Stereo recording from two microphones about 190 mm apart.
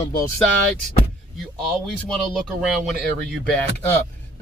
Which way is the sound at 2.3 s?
Centre (ahead or behind).